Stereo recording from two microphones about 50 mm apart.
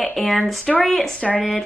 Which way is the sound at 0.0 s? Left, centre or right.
Centre.